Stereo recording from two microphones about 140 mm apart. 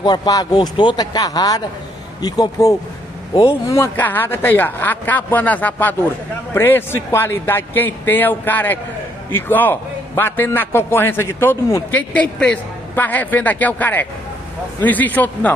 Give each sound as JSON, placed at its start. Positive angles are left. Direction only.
{"t": 0.0, "sound": "a man's voice", "side_deg": 30}